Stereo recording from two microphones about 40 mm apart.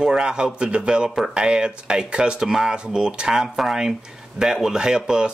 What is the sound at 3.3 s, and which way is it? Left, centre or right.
Speech, centre.